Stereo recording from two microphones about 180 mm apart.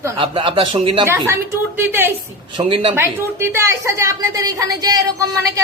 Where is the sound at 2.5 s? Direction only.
30° right (ahead or behind).